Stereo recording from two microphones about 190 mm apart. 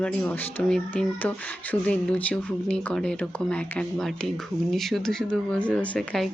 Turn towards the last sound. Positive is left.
turn(degrees=5)  # may be behind; listen again after turning